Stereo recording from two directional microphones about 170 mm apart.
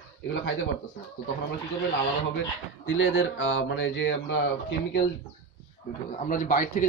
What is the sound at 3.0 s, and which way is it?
Speech, 90° left.